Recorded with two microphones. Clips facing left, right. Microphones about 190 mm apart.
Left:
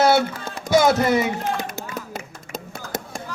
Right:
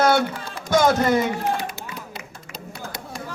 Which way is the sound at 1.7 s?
45° left (ahead or behind).